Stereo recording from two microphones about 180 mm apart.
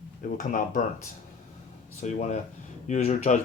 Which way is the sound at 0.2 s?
45° left (ahead or behind).